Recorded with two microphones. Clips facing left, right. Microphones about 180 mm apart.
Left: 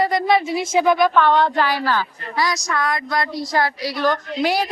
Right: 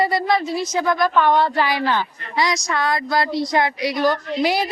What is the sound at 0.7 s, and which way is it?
Speech, 20° left (ahead or behind).